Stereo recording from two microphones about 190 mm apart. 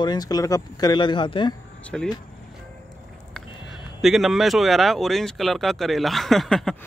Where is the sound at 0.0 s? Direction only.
20° left (ahead or behind).